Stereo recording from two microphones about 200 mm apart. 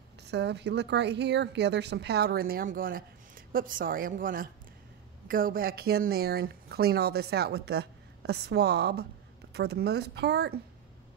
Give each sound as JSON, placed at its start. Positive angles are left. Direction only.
{"t": 0.2, "sound": "a woman's voice", "side_deg": -55}